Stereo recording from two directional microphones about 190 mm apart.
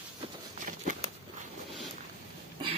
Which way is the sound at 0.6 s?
40° right (ahead or behind).